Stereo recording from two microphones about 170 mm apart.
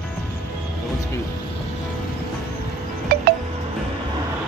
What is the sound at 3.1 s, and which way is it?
Wind chime, 65° right (ahead or behind).